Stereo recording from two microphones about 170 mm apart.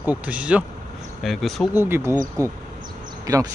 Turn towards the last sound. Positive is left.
turn(degrees=-20)  # may be behind; listen again after turning